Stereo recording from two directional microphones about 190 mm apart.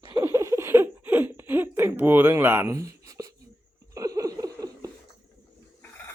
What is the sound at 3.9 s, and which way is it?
Laughter, 20° right (ahead or behind).